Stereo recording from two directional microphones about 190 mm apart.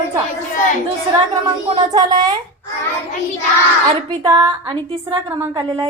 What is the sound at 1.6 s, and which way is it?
Speech, 20° right (ahead or behind).